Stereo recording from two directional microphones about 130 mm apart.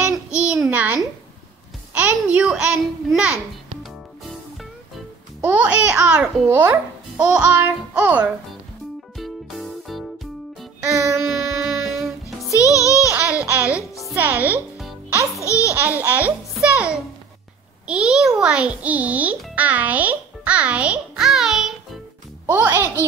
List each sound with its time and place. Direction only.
0.0 s child singing: 10° right (ahead or behind)
0.7 s a child's voice: 15° right (ahead or behind)
2.3 s a child's voice: 5° right (ahead or behind)
5.4 s a child's voice: 10° right (ahead or behind)
9.1 s music: centre (ahead or behind)
10.8 s music: 20° right (ahead or behind)
11.2 s music: centre (ahead or behind)
12.4 s music: 25° left (ahead or behind)
13.1 s laughter: 10° right (ahead or behind)
14.1 s a child's voice: 15° right (ahead or behind)
15.7 s a child's voice: 15° right (ahead or behind)
22.5 s a child's voice: 15° right (ahead or behind)